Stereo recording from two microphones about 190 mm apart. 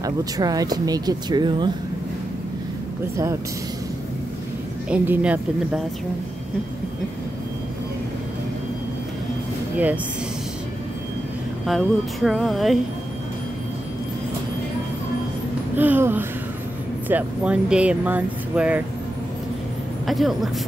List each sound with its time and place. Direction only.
0.0 s speech: 20° right (ahead or behind)
4.8 s speech: 10° right (ahead or behind)
11.6 s music: centre (ahead or behind)
15.7 s speech: 10° right (ahead or behind)
20.1 s a man's voice: centre (ahead or behind)